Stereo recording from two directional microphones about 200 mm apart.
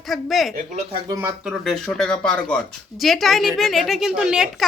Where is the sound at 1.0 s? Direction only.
15° right (ahead or behind).